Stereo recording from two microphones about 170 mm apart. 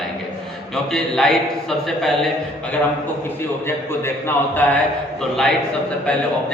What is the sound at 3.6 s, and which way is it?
A man's voice, 15° left (ahead or behind).